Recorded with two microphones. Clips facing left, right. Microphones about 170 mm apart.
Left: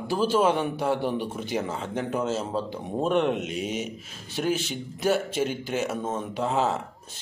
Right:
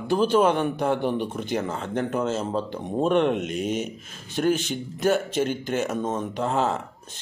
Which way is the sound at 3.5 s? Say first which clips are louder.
Right 3 dB; 50° right (ahead or behind).